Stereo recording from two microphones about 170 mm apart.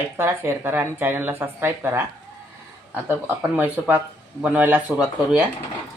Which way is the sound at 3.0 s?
10° right (ahead or behind).